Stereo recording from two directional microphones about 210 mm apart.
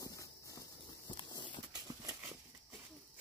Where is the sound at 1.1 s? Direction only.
20° left (ahead or behind).